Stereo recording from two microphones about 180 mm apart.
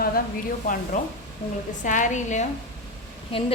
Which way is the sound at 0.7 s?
45° left (ahead or behind).